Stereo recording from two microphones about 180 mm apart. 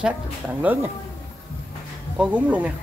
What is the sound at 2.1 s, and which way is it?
Speech, 5° right (ahead or behind).